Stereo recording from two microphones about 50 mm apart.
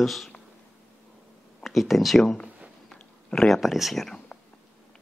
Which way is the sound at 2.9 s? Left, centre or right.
Centre.